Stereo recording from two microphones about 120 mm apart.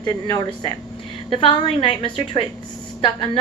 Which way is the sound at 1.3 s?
45° left (ahead or behind).